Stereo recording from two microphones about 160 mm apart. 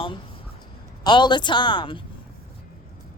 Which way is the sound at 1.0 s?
30° left (ahead or behind).